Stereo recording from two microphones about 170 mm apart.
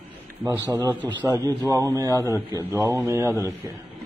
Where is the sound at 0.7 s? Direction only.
15° right (ahead or behind).